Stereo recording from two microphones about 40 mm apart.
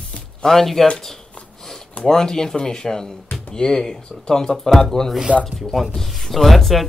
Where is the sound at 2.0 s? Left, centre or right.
Centre.